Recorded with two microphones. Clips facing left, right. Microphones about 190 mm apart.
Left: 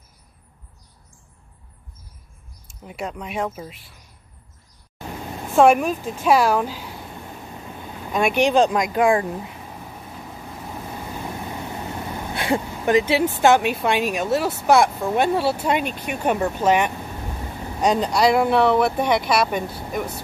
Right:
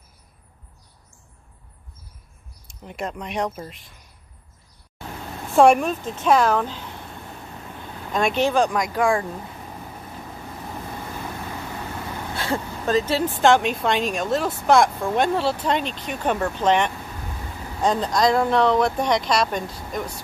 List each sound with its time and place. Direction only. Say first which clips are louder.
2.7 s speech: even; 5° left (ahead or behind)
5.0 s a sound: left 2 dB; 15° left (ahead or behind)
5.5 s speech: even; centre (ahead or behind)
9.6 s vehicle: even; centre (ahead or behind)
11.1 s speech: left 2 dB; 15° left (ahead or behind)
17.3 s speech: left 3 dB; 20° left (ahead or behind)